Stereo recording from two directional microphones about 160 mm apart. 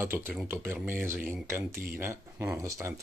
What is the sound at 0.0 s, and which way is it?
Speech, 15° right (ahead or behind).